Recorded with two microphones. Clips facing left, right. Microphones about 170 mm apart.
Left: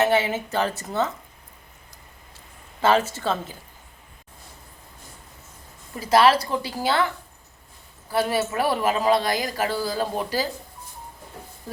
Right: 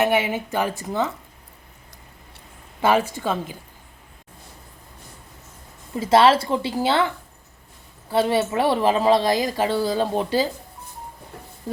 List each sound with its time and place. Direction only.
0.0 s a woman's voice: 15° right (ahead or behind)
2.8 s a woman's voice: 15° right (ahead or behind)
5.9 s a woman's voice: 25° right (ahead or behind)
8.1 s a woman's voice: 25° right (ahead or behind)